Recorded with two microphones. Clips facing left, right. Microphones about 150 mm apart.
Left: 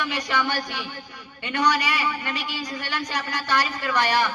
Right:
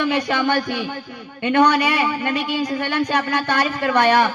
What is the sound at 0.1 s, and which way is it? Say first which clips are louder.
A man's voice: right 7 dB; 55° right (ahead or behind).